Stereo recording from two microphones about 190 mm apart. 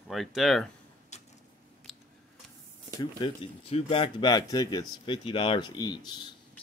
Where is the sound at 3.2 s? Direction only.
30° left (ahead or behind).